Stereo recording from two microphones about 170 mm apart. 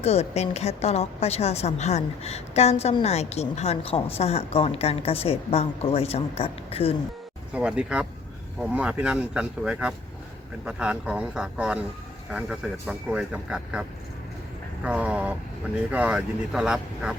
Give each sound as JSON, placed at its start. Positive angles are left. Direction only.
{"t": 0.0, "sound": "a woman's voice", "side_deg": 40}
{"t": 7.5, "sound": "speech", "side_deg": -5}
{"t": 14.8, "sound": "speech", "side_deg": -5}